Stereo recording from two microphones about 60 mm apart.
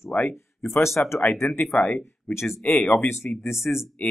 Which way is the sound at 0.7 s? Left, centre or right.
Left.